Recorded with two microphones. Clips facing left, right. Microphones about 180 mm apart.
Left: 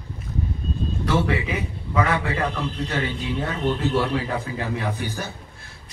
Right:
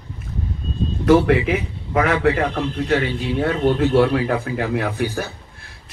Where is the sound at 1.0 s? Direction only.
55° right (ahead or behind).